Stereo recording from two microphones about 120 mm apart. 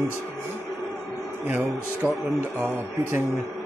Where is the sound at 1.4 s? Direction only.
15° right (ahead or behind).